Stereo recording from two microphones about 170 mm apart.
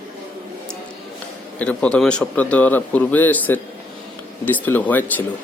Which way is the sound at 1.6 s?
5° left (ahead or behind).